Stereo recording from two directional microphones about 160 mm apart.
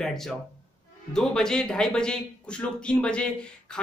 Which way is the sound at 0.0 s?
Centre (ahead or behind).